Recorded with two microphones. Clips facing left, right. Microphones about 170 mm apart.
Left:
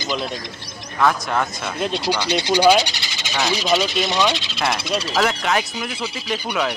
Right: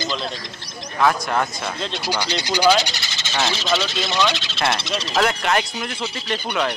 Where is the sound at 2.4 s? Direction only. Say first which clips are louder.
Left 3 dB; 25° left (ahead or behind).